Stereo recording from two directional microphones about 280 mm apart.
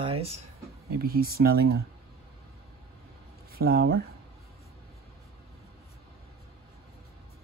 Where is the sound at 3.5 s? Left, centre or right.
Right.